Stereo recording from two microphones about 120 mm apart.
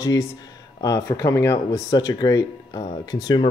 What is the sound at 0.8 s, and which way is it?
Speech, 30° left (ahead or behind).